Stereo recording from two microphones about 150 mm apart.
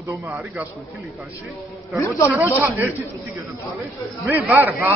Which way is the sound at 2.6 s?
15° right (ahead or behind).